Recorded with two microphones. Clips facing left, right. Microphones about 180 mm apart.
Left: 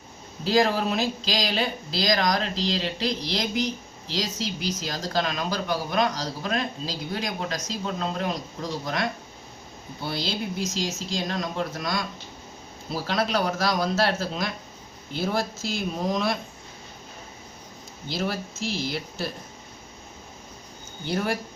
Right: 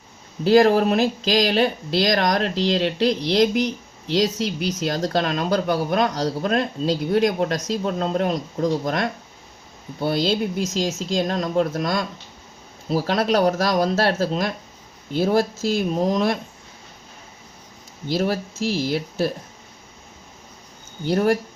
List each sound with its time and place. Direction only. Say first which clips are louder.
0.4 s speech: right 7 dB; 55° right (ahead or behind)
18.1 s speech: right 7 dB; 45° right (ahead or behind)
21.0 s speech: right 8 dB; 45° right (ahead or behind)